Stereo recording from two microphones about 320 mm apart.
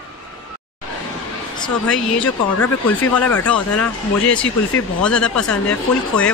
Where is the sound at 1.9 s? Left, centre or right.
Centre.